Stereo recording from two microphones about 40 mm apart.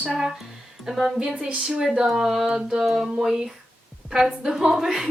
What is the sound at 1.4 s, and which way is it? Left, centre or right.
A woman's voice, centre.